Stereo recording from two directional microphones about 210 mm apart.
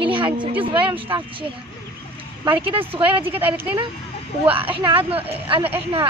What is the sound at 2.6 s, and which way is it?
Speech, 25° right (ahead or behind).